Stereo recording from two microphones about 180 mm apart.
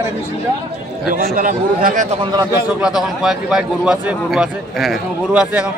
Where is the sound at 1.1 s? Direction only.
50° right (ahead or behind).